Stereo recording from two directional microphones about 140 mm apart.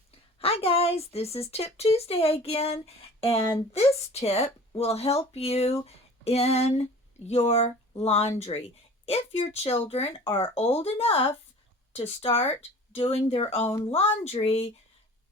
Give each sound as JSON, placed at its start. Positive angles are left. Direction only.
{"t": 0.3, "sound": "speech", "side_deg": 45}